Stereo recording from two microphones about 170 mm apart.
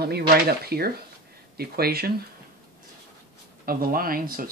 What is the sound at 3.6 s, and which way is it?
Speech, 60° right (ahead or behind).